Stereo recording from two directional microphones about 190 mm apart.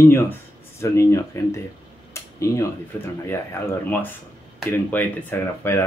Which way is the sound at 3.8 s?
10° left (ahead or behind).